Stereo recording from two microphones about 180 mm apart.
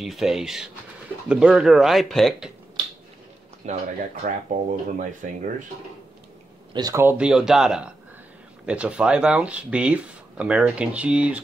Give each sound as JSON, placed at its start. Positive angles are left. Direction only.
{"t": 0.0, "sound": "speech", "side_deg": 0}
{"t": 3.6, "sound": "speech", "side_deg": -40}
{"t": 6.7, "sound": "speech", "side_deg": -20}